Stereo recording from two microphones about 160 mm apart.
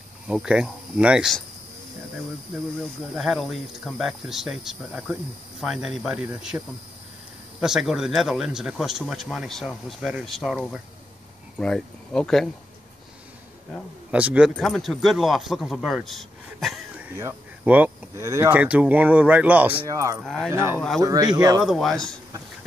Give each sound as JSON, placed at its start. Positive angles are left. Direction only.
{"t": 0.3, "sound": "speech", "side_deg": -5}
{"t": 3.2, "sound": "speech", "side_deg": 0}
{"t": 14.1, "sound": "speech", "side_deg": -10}
{"t": 17.2, "sound": "speech", "side_deg": -15}
{"t": 20.2, "sound": "speech", "side_deg": 0}
{"t": 20.5, "sound": "speech", "side_deg": -15}
{"t": 21.6, "sound": "speech", "side_deg": 0}